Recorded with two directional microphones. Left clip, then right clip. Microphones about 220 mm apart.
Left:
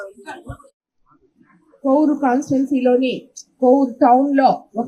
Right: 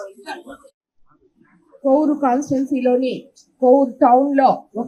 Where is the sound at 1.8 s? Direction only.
45° left (ahead or behind).